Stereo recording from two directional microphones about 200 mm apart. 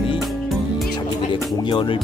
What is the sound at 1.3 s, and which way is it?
Speech, 25° left (ahead or behind).